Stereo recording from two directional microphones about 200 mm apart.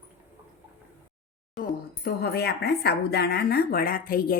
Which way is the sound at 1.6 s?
50° left (ahead or behind).